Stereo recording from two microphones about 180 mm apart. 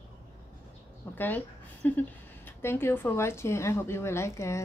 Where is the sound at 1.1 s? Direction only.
10° left (ahead or behind).